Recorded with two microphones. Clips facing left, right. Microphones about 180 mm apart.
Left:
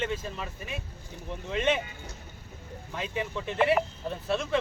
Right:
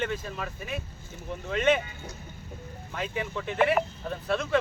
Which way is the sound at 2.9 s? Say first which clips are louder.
Right 1 dB; centre (ahead or behind).